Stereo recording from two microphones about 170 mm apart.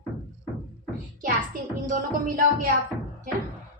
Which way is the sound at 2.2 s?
55° right (ahead or behind).